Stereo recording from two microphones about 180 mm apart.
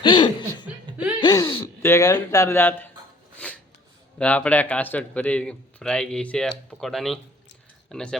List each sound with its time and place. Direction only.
0.0 s chuckle: 25° left (ahead or behind)
1.2 s speech: 25° left (ahead or behind)
1.6 s speech: 15° left (ahead or behind)
3.3 s filing: 10° left (ahead or behind)
4.2 s a man's voice: 5° left (ahead or behind)